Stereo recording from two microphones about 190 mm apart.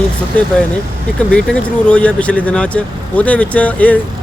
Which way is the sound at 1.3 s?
5° left (ahead or behind).